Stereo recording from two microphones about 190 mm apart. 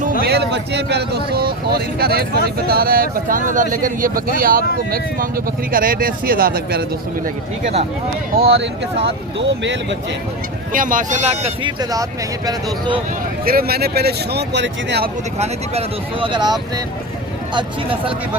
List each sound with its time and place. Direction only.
0.3 s speech: 60° right (ahead or behind)
5.7 s speech: 50° right (ahead or behind)
8.4 s speech: 60° right (ahead or behind)
10.7 s speech: 45° right (ahead or behind)
11.8 s speech: 20° right (ahead or behind)
13.4 s speech: 50° right (ahead or behind)
16.2 s speech: 25° right (ahead or behind)